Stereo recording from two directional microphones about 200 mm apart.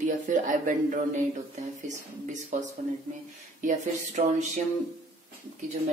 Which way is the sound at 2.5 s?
40° right (ahead or behind).